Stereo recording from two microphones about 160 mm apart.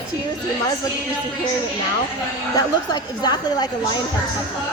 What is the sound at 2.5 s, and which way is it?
Speech, 25° left (ahead or behind).